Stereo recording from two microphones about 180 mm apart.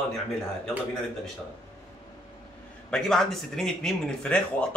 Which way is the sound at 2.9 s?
5° left (ahead or behind).